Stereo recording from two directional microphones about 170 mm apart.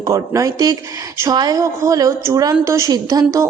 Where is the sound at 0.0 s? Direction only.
20° right (ahead or behind).